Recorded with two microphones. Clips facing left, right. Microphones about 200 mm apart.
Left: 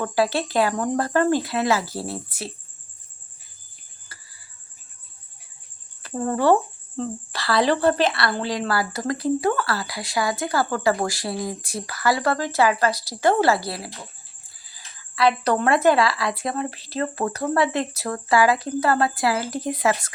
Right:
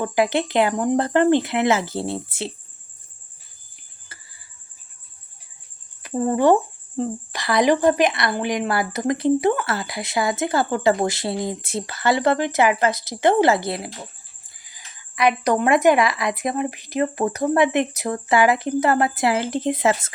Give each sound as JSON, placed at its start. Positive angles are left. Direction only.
{"t": 0.0, "sound": "speech", "side_deg": -20}
{"t": 4.1, "sound": "music", "side_deg": -25}
{"t": 6.0, "sound": "speech", "side_deg": -15}